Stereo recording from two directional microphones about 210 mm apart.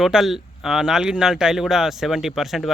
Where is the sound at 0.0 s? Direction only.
Centre (ahead or behind).